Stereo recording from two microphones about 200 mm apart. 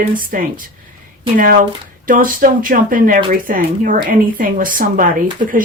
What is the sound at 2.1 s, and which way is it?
Speech, 45° right (ahead or behind).